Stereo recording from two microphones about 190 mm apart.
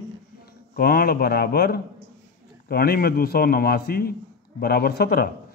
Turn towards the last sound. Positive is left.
turn(degrees=55)  # may be behind; listen again after turning